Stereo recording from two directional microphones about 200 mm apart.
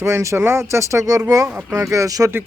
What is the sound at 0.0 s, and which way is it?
Speech, 15° right (ahead or behind).